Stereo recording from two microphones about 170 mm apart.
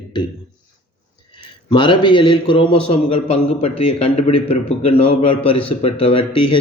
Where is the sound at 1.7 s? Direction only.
30° left (ahead or behind).